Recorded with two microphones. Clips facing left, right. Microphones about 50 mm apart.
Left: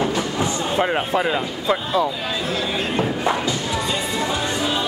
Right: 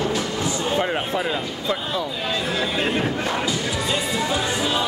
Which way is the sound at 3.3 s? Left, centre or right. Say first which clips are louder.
Left 1 dB; centre.